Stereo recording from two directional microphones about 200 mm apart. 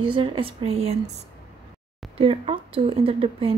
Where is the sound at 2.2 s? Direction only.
25° right (ahead or behind).